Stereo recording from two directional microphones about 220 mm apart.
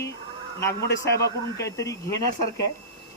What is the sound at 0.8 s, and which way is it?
Speech, 50° left (ahead or behind).